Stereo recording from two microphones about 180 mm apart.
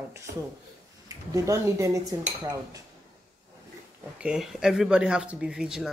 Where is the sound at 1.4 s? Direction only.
15° right (ahead or behind).